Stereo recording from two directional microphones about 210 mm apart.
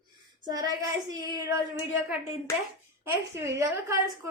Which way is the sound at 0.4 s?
15° right (ahead or behind).